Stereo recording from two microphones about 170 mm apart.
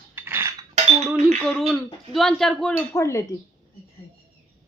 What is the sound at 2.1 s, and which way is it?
Speech, centre (ahead or behind).